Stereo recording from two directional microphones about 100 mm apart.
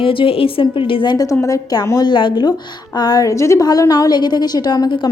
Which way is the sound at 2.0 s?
50° left (ahead or behind).